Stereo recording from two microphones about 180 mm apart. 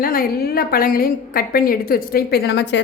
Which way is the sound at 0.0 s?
55° left (ahead or behind).